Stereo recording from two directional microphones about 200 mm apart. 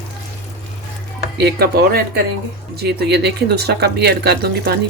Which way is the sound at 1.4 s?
50° right (ahead or behind).